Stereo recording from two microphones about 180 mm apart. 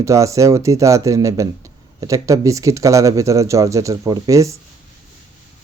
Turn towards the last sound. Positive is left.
turn(degrees=-15)  # may be behind; listen again after turning